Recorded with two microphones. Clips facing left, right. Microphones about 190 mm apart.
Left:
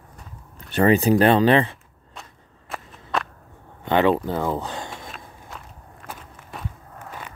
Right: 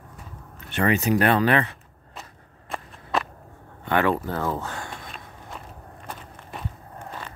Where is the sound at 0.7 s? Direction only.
35° left (ahead or behind).